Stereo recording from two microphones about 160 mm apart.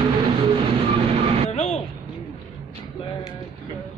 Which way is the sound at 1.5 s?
45° left (ahead or behind).